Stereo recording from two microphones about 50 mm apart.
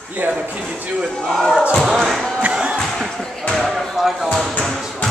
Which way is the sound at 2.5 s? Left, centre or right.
Right.